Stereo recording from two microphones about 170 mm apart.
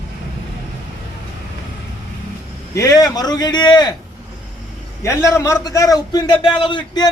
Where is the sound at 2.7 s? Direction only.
20° left (ahead or behind).